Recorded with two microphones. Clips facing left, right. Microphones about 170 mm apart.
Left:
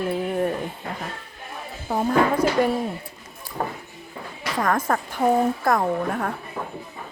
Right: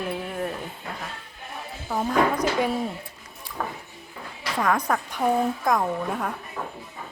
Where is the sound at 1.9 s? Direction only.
25° left (ahead or behind).